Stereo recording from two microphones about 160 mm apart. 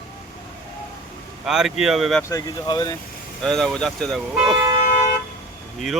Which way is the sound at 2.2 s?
20° left (ahead or behind).